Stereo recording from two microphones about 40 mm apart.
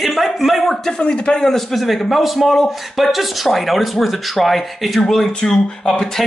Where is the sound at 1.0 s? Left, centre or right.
Left.